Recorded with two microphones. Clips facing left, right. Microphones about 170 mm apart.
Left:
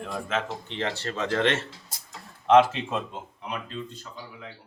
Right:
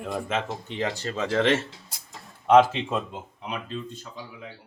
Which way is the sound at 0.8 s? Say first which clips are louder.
Right 1 dB; 10° right (ahead or behind).